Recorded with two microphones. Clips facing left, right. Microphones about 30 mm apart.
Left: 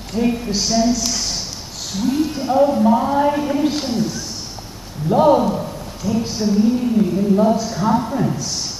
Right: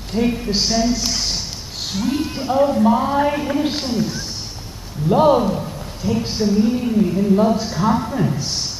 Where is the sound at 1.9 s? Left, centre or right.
Centre.